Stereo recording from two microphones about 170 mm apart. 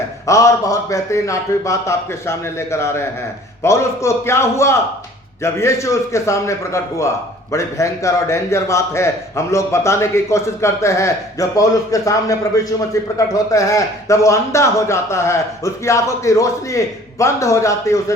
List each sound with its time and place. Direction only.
0.3 s a man's voice: 20° left (ahead or behind)